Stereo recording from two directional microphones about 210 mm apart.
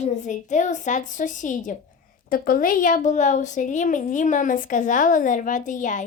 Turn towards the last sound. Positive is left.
turn(degrees=35)  # may be behind; listen again after turning